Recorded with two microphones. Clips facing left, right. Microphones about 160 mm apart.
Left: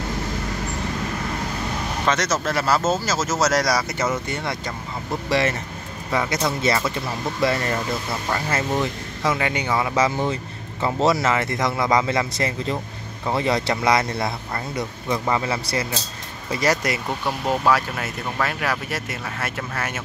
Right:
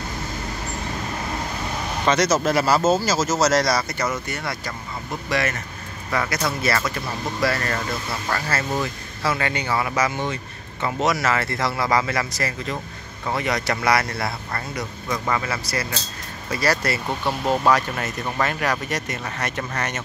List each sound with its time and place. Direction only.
2.0 s speech: centre (ahead or behind)
2.3 s speech: 10° right (ahead or behind)
3.7 s speech: 10° left (ahead or behind)
4.3 s a man's voice: 20° left (ahead or behind)
17.5 s speech: 5° left (ahead or behind)